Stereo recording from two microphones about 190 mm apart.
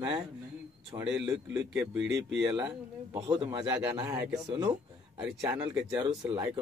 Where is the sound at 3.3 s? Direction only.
20° right (ahead or behind).